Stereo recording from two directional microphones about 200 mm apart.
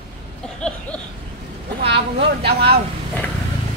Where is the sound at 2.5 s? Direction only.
50° right (ahead or behind).